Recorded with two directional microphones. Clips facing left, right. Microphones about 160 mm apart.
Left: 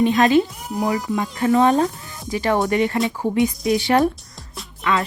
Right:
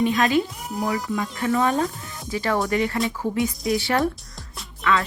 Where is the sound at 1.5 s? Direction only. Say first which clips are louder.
Left 6 dB; 25° left (ahead or behind).